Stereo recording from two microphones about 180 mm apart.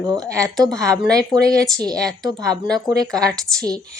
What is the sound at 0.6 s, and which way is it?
Speech, 20° right (ahead or behind).